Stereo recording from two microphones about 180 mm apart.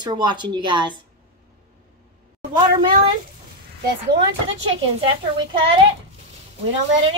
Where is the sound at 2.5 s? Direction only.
25° right (ahead or behind).